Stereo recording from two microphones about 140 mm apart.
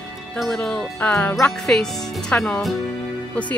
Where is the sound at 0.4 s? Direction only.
5° left (ahead or behind).